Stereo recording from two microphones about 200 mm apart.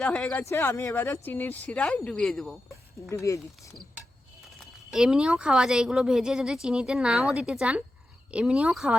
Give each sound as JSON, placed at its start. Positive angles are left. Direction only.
{"t": 0.0, "sound": "speech", "side_deg": 5}
{"t": 3.1, "sound": "speech", "side_deg": 15}
{"t": 4.9, "sound": "speech", "side_deg": -5}